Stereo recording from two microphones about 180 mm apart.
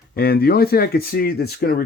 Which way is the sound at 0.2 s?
60° left (ahead or behind).